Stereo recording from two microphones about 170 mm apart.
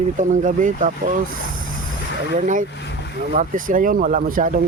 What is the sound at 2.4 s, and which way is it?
Speech, 50° right (ahead or behind).